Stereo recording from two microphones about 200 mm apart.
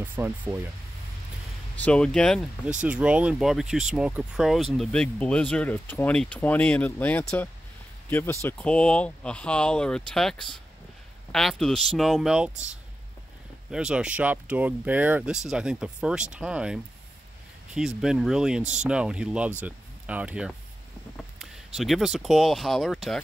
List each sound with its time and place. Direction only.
0.0 s speech: 10° right (ahead or behind)
1.8 s speech: 5° left (ahead or behind)
13.7 s speech: 5° right (ahead or behind)